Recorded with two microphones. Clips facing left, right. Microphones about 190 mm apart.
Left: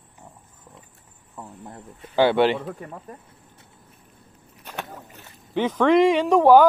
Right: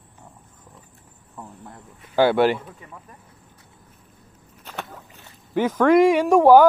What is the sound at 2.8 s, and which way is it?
Speech, 35° left (ahead or behind).